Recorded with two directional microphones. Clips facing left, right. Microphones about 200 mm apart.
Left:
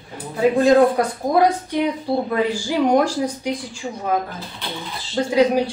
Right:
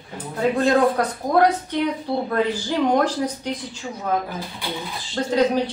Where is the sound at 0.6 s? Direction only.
10° left (ahead or behind).